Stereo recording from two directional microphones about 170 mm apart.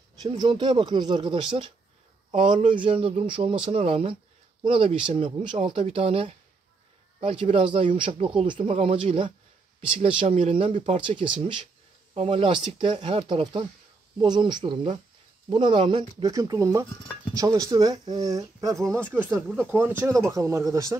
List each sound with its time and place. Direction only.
0.2 s speech: 25° right (ahead or behind)
2.7 s speech: 30° right (ahead or behind)